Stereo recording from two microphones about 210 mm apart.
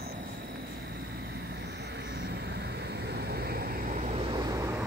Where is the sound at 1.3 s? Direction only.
55° right (ahead or behind); by 4.8 s 15° right (ahead or behind).